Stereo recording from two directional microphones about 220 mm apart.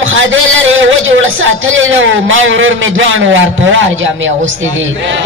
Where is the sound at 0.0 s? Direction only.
60° right (ahead or behind).